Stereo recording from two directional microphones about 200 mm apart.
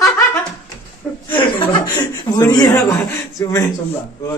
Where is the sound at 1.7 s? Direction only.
20° left (ahead or behind).